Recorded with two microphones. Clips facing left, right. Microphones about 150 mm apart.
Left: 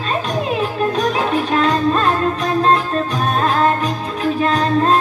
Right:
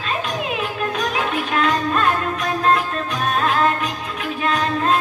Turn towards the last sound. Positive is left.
turn(degrees=35)  # may be behind; listen again after turning